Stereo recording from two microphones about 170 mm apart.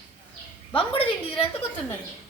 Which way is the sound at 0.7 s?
35° left (ahead or behind).